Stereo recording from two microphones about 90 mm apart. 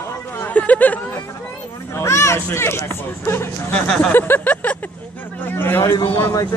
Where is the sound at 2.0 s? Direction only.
30° left (ahead or behind).